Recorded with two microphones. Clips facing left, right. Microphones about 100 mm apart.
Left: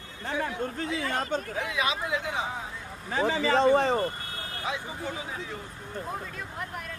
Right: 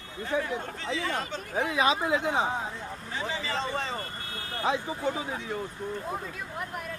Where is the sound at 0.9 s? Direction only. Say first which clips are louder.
Even; 45° left (ahead or behind).